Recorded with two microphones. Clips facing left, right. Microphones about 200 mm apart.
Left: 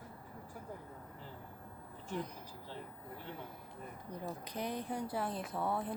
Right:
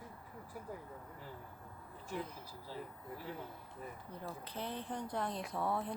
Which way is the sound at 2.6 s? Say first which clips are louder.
Right 3 dB; 10° right (ahead or behind).